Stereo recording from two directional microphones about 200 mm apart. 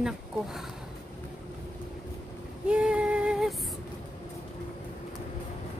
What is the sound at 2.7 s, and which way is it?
Female singing, 5° right (ahead or behind).